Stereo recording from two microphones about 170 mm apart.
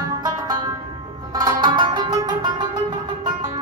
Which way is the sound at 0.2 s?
20° right (ahead or behind).